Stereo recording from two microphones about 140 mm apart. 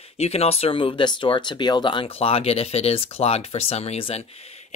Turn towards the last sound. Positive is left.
turn(degrees=45)  # may be behind; listen again after turning